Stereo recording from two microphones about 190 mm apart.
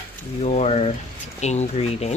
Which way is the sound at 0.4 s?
35° left (ahead or behind).